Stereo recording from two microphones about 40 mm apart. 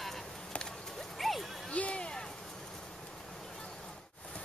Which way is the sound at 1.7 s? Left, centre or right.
Left.